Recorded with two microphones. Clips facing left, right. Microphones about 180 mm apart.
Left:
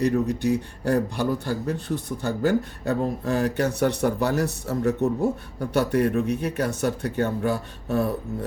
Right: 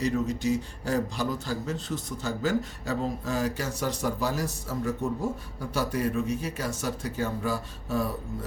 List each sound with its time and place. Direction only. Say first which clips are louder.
0.0 s speech: left 5 dB; 60° left (ahead or behind)